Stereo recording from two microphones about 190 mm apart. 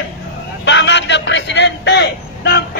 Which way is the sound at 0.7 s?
70° left (ahead or behind).